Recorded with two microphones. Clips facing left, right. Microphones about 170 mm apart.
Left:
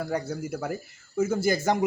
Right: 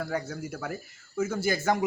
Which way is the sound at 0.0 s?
5° left (ahead or behind).